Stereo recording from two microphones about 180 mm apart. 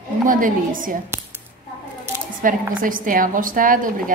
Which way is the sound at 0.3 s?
50° right (ahead or behind).